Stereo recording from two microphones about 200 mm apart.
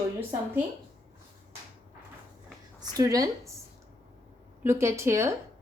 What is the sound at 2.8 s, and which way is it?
Speech, 20° right (ahead or behind).